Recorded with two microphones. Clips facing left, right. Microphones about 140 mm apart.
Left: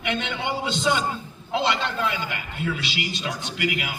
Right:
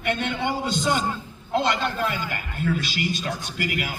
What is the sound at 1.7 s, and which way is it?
Speech, 45° right (ahead or behind).